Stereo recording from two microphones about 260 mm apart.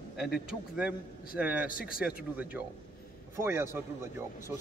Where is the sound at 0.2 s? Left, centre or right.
Centre.